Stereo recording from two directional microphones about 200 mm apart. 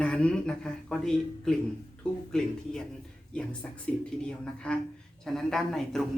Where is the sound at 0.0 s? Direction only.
5° left (ahead or behind).